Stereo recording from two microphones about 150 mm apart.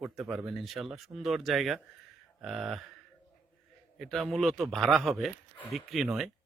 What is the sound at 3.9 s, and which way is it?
Speech, centre (ahead or behind).